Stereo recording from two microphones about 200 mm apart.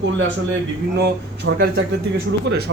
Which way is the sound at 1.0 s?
60° right (ahead or behind).